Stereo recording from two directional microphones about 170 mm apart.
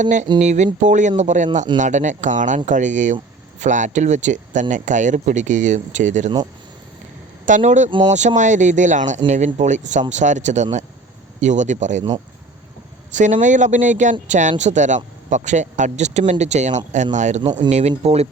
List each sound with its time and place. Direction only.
0.0 s speech: 45° right (ahead or behind)
7.4 s speech: 45° right (ahead or behind)
7.9 s speech: 30° right (ahead or behind)
8.4 s speech: 45° right (ahead or behind)
13.1 s speech: 45° right (ahead or behind)